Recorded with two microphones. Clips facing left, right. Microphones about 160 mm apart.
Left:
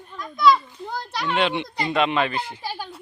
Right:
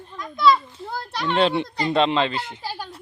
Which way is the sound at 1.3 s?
35° right (ahead or behind).